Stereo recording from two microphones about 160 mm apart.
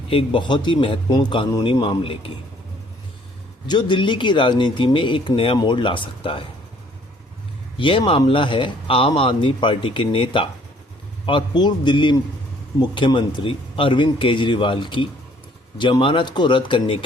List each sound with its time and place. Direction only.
0.1 s a man's voice: 35° left (ahead or behind)
3.7 s speech: 30° left (ahead or behind)
7.8 s a man's voice: 30° left (ahead or behind)